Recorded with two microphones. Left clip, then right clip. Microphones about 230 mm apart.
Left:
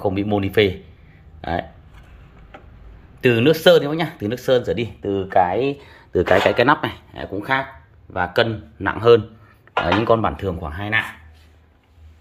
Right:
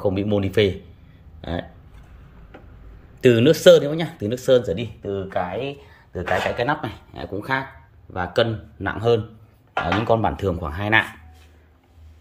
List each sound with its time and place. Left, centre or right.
0.0 s speech: centre
3.2 s speech: centre
4.7 s speech: centre
6.6 s speech: centre
6.9 s speech: centre